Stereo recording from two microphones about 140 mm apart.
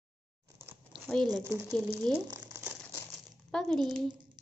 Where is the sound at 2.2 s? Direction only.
25° right (ahead or behind).